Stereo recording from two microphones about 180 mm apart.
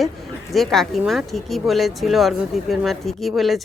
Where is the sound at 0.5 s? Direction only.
Centre (ahead or behind).